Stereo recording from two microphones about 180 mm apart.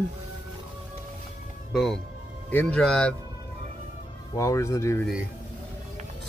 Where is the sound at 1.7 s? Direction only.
5° left (ahead or behind).